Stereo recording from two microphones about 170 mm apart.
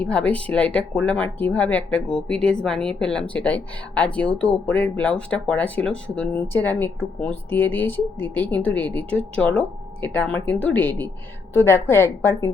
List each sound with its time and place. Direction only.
0.0 s speech: 10° left (ahead or behind)